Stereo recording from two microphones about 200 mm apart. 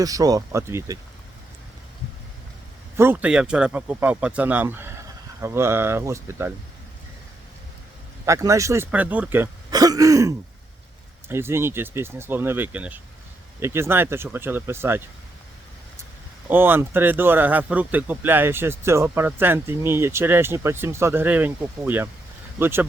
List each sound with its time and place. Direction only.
0.0 s speech: 20° right (ahead or behind)
3.0 s speech: 10° right (ahead or behind)
8.2 s speech: 15° right (ahead or behind)
16.5 s speech: 10° right (ahead or behind)